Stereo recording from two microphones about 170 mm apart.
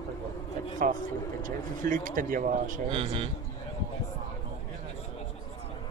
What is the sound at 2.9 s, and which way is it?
Speech, 30° right (ahead or behind).